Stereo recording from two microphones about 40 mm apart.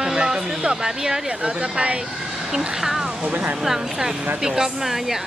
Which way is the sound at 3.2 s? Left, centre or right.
Right.